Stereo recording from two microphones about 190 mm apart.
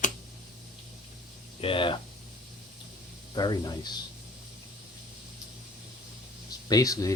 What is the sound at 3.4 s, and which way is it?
Speech, 20° left (ahead or behind).